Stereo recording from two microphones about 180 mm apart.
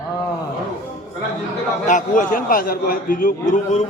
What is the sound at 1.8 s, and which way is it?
A man's voice, 45° left (ahead or behind).